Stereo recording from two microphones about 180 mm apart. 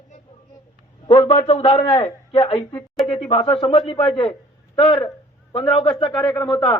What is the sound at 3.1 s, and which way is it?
A man's voice, 30° left (ahead or behind).